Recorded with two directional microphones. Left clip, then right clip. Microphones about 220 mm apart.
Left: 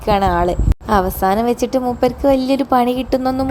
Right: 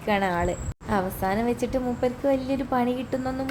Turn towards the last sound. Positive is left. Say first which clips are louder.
# left 11 dB
turn(degrees=30)  # may be behind; listen again after turning